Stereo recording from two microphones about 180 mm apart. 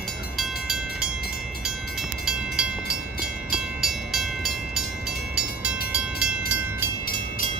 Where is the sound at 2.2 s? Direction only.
5° right (ahead or behind).